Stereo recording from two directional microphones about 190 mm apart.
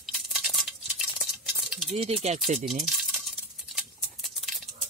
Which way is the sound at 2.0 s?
35° right (ahead or behind).